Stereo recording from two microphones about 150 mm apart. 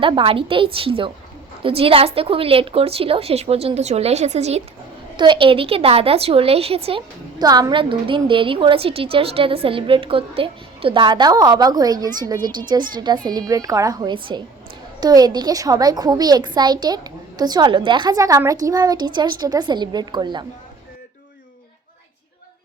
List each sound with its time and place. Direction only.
0.0 s a woman's voice: 35° right (ahead or behind)
5.1 s a woman's voice: 35° right (ahead or behind)
7.3 s a woman's voice: 25° right (ahead or behind)